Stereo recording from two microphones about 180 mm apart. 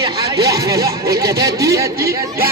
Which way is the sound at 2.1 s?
55° right (ahead or behind).